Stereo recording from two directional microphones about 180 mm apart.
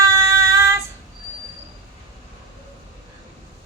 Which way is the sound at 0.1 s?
15° right (ahead or behind).